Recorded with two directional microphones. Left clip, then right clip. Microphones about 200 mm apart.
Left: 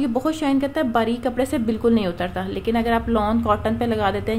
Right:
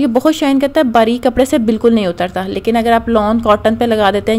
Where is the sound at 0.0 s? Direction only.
40° right (ahead or behind).